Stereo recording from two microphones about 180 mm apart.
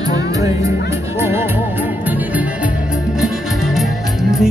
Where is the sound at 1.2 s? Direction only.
15° right (ahead or behind).